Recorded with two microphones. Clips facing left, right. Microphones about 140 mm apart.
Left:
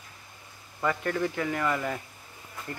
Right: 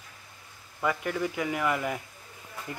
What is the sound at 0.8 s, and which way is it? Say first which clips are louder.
Speech: left 1 dB; 10° right (ahead or behind).